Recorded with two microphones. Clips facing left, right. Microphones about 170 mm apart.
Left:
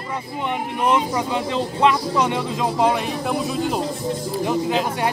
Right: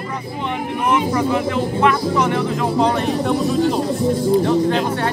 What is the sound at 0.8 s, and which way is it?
A man's voice, 15° left (ahead or behind).